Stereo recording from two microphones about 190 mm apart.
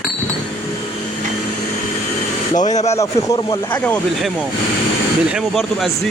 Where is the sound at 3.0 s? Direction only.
15° left (ahead or behind).